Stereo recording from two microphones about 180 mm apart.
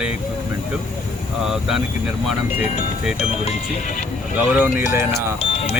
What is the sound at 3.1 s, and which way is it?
Speech, 35° left (ahead or behind).